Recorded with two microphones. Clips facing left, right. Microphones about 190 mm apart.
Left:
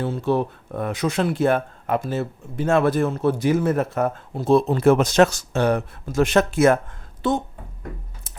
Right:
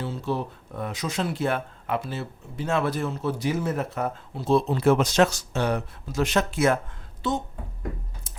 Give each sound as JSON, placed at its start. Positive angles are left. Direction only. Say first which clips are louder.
{"t": 0.0, "sound": "speech", "louder": "left 7 dB", "side_deg": 55}